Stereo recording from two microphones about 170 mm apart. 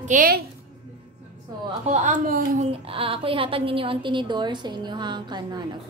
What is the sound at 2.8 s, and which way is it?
A woman's voice, 35° right (ahead or behind).